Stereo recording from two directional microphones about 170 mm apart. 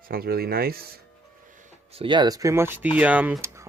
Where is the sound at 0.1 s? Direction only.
65° right (ahead or behind).